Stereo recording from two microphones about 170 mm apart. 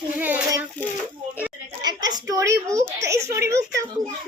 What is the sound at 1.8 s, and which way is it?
A child's voice, 25° right (ahead or behind).